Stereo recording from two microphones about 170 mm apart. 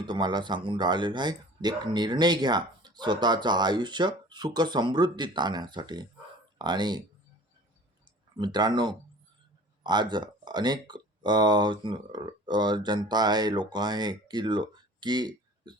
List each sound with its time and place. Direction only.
0.0 s speech: 25° right (ahead or behind)
8.4 s speech: 25° right (ahead or behind)